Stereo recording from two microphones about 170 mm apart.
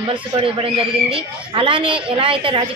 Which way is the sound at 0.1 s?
30° right (ahead or behind).